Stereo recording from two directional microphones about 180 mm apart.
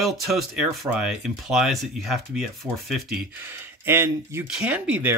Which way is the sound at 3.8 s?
15° right (ahead or behind).